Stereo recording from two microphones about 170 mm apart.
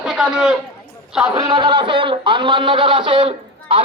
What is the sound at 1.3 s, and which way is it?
Speech, 25° right (ahead or behind).